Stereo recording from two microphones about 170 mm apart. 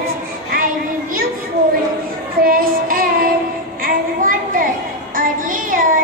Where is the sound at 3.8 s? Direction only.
55° right (ahead or behind).